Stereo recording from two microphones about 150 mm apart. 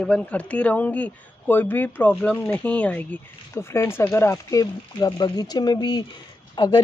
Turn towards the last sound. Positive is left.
turn(degrees=30)  # may be behind; listen again after turning